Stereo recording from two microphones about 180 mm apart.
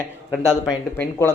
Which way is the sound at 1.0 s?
10° left (ahead or behind).